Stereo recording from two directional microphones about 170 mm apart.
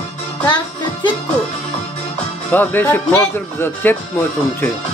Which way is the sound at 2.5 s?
10° left (ahead or behind).